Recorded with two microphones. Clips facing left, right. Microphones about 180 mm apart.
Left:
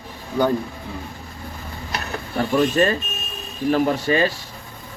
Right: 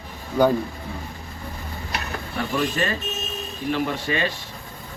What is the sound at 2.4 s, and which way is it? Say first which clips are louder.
Speech: left 7 dB; 40° left (ahead or behind).